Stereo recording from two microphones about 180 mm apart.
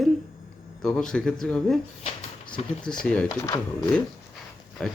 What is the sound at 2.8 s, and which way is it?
Speech, 5° left (ahead or behind).